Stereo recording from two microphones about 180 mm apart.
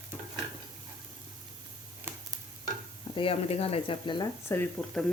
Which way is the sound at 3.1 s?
30° left (ahead or behind).